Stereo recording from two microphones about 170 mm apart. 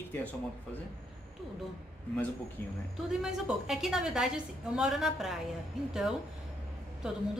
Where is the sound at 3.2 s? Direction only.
Centre (ahead or behind).